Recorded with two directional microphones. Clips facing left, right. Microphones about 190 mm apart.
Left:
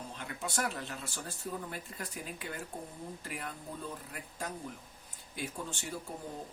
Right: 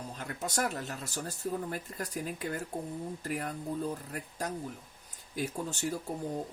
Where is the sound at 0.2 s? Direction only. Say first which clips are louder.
Right 3 dB; 40° right (ahead or behind).